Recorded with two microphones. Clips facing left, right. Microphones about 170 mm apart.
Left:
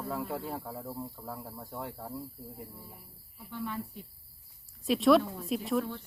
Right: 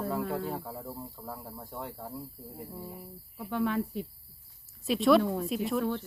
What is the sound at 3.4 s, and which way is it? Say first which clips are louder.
Speech: right 8 dB; 80° right.